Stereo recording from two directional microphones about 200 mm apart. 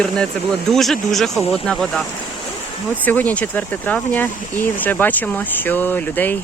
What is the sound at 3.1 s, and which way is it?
Speech, 10° left (ahead or behind).